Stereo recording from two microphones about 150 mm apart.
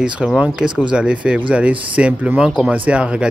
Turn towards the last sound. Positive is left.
turn(degrees=-5)  # may be behind; listen again after turning